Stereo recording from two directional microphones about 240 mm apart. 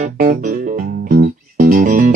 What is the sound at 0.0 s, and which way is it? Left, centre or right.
Music, right.